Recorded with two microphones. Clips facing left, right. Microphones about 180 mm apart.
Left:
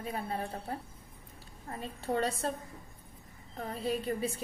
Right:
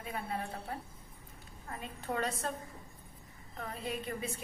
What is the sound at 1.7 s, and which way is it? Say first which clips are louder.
Speech: left 4 dB; 30° left (ahead or behind).